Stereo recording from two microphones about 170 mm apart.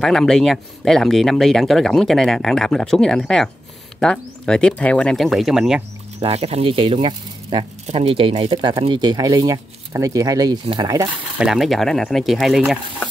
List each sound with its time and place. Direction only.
0.0 s speech: 5° left (ahead or behind)
6.1 s speech: 35° right (ahead or behind); by 11.1 s 20° right (ahead or behind)
11.3 s speech: 5° right (ahead or behind)